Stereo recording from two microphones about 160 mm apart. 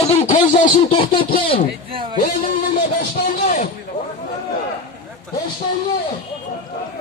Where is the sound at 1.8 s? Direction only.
35° right (ahead or behind).